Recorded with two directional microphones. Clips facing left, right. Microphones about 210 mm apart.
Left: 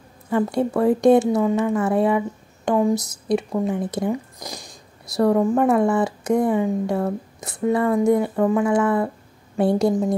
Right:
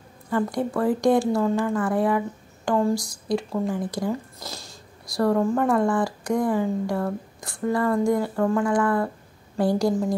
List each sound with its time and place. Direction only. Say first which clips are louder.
0.3 s speech: left 4 dB; 25° left (ahead or behind)